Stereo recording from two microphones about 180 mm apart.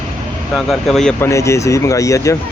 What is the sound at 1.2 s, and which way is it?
Speech, 15° left (ahead or behind).